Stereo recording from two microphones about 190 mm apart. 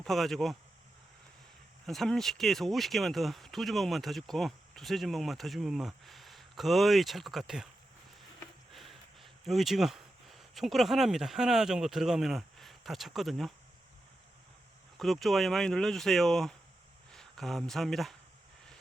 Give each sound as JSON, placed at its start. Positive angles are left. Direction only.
{"t": 0.0, "sound": "speech", "side_deg": 0}
{"t": 1.9, "sound": "speech", "side_deg": 0}
{"t": 8.7, "sound": "speech", "side_deg": 0}
{"t": 14.9, "sound": "speech", "side_deg": 0}